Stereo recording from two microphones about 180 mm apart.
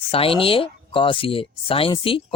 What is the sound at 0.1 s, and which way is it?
Speech, 30° left (ahead or behind).